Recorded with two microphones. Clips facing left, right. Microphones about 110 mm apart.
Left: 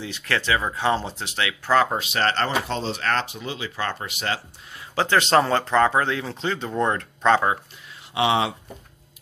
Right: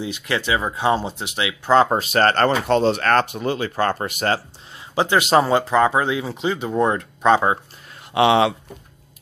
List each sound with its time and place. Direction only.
0.0 s speech: 15° right (ahead or behind)
1.8 s speech: 40° right (ahead or behind)
4.9 s speech: 15° right (ahead or behind)
8.1 s speech: 65° right (ahead or behind)